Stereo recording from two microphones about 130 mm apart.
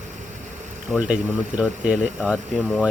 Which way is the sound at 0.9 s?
10° right (ahead or behind).